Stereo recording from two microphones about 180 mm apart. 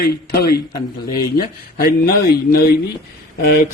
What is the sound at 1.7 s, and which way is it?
A man's voice, 55° left (ahead or behind).